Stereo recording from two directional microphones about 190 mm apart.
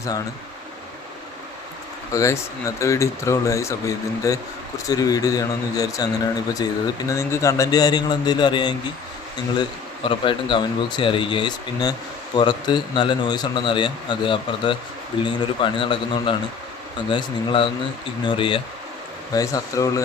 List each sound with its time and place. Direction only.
2.1 s speech: 15° left (ahead or behind)